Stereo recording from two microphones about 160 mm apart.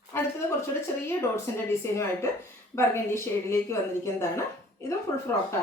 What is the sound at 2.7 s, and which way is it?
A woman's voice, 15° left (ahead or behind).